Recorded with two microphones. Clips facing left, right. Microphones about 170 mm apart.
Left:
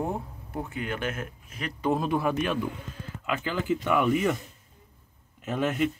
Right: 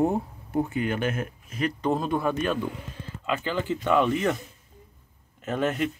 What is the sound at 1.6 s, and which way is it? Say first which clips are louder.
Speech: right 2 dB; 5° left (ahead or behind).